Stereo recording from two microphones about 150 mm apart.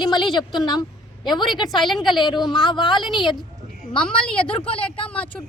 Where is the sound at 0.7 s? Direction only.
30° left (ahead or behind).